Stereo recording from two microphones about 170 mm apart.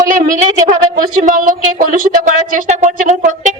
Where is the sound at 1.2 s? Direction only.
50° right (ahead or behind).